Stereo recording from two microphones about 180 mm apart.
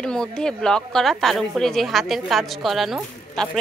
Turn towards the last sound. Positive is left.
turn(degrees=5)  # may be behind; listen again after turning